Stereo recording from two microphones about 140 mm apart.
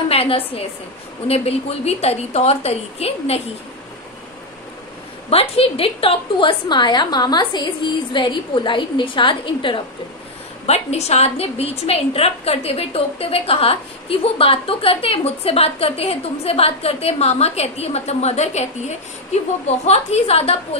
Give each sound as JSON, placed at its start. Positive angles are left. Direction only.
{"t": 0.1, "sound": "a woman's voice", "side_deg": 45}
{"t": 5.3, "sound": "a woman's voice", "side_deg": 45}
{"t": 10.7, "sound": "a woman's voice", "side_deg": 50}